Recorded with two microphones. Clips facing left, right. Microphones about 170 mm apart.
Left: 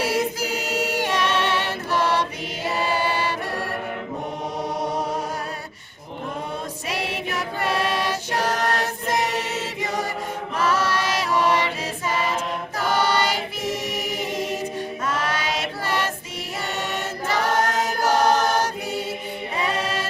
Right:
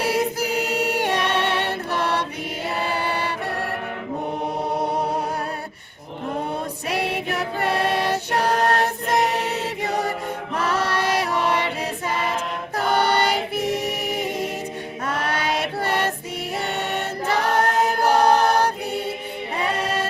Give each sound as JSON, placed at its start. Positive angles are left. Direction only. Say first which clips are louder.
{"t": 0.0, "sound": "choir", "louder": "right 1 dB", "side_deg": -60}
{"t": 2.7, "sound": "music", "louder": "left 2 dB", "side_deg": -55}
{"t": 6.8, "sound": "music", "louder": "right 4 dB", "side_deg": -60}
{"t": 8.7, "sound": "chant", "louder": "right 3 dB", "side_deg": -60}
{"t": 10.6, "sound": "choir", "louder": "left 1 dB", "side_deg": -60}
{"t": 19.6, "sound": "music", "louder": "right 2 dB", "side_deg": -55}